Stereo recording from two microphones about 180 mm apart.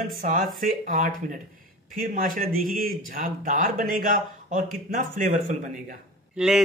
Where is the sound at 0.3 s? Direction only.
50° right (ahead or behind).